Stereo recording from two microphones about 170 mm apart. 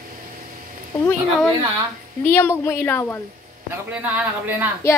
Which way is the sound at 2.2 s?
15° left (ahead or behind).